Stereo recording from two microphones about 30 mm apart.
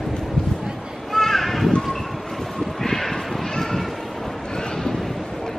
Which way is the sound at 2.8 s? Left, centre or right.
Centre.